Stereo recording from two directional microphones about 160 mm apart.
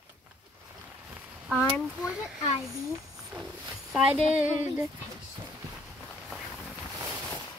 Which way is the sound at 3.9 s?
5° right (ahead or behind).